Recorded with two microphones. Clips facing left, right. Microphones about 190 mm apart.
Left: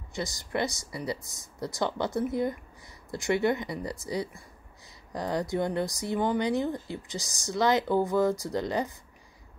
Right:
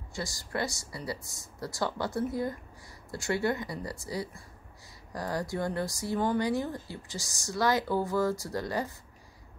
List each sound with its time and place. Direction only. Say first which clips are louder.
0.1 s speech: left 3 dB; 20° left (ahead or behind)